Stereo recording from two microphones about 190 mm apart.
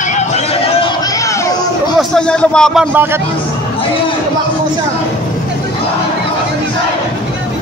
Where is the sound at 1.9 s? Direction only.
5° left (ahead or behind).